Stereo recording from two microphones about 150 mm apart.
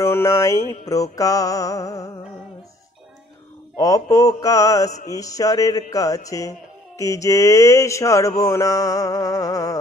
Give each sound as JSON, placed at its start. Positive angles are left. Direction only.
{"t": 0.0, "sound": "mantra", "side_deg": 20}
{"t": 3.7, "sound": "mantra", "side_deg": 25}